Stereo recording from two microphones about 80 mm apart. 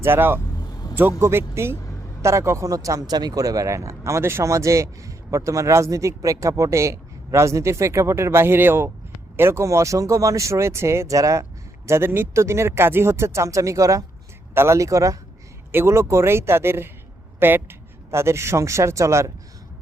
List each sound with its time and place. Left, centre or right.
0.0 s speech: right
11.9 s speech: right